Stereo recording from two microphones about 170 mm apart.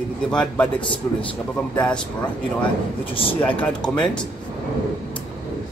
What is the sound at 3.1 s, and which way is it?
Speech, 30° left (ahead or behind).